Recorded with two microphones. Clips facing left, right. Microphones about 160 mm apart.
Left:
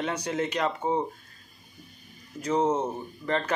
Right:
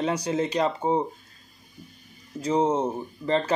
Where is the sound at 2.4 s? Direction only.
30° right (ahead or behind).